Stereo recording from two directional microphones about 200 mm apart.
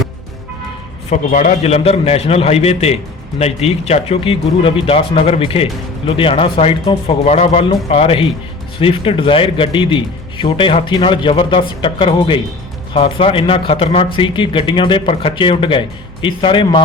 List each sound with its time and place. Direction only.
1.1 s a man's voice: 40° left (ahead or behind)